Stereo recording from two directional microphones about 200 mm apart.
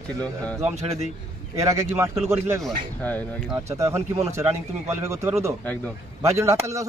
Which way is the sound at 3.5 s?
15° right (ahead or behind).